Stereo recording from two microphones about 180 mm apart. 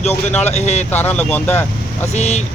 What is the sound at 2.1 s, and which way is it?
Speech, 40° left (ahead or behind).